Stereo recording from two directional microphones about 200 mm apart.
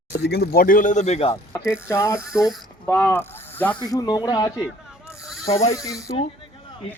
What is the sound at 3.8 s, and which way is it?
Speech, 20° left (ahead or behind).